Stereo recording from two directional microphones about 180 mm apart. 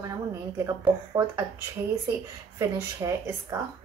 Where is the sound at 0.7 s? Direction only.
15° right (ahead or behind).